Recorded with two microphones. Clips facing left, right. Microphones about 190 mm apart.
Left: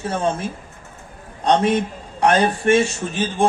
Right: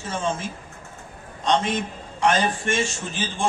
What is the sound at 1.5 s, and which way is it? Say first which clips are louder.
A man's voice: left 6 dB; 60° left (ahead or behind).